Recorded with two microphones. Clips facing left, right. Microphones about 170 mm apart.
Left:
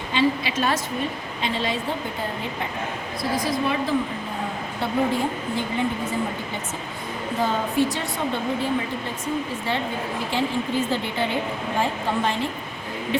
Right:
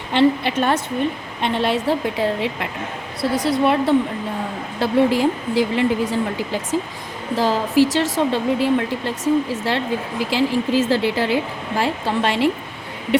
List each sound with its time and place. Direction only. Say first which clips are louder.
0.1 s a woman's voice: right 6 dB; 65° right (ahead or behind); by 2.6 s 90° right
3.4 s a woman's voice: right 9 dB; 70° right (ahead or behind)
4.8 s a woman's voice: right 7 dB; 90° right